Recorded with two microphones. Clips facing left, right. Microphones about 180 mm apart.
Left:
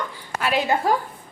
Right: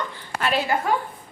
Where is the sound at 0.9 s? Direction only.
35° left (ahead or behind).